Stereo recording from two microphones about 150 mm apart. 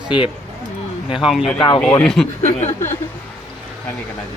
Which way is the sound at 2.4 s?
50° left (ahead or behind).